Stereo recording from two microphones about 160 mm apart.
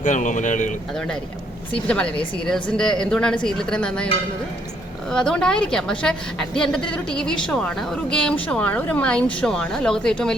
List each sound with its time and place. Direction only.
0.0 s speech: 50° left (ahead or behind)
0.9 s a woman's voice: 5° left (ahead or behind)